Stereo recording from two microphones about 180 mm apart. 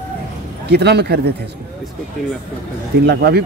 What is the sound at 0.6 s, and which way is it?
Speech, 65° right (ahead or behind).